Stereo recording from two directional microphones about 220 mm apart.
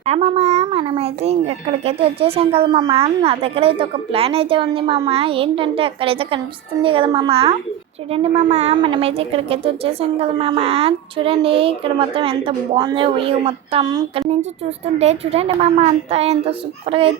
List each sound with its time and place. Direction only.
0.0 s a child's voice: 30° right (ahead or behind)